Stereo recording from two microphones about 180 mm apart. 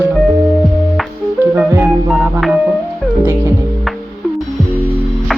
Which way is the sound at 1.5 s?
15° right (ahead or behind).